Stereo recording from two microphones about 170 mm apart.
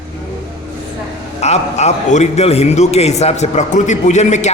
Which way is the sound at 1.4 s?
40° left (ahead or behind).